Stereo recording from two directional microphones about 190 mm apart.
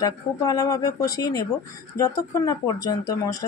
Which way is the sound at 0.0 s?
20° left (ahead or behind).